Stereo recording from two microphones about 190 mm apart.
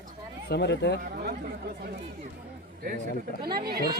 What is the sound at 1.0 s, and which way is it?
Chatter, 50° right (ahead or behind).